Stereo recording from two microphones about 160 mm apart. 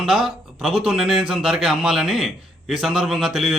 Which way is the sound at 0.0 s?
Centre (ahead or behind).